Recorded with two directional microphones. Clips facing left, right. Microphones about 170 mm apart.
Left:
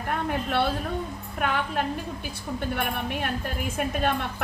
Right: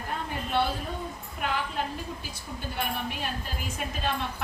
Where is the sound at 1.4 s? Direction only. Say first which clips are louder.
Left 4 dB; 60° left (ahead or behind).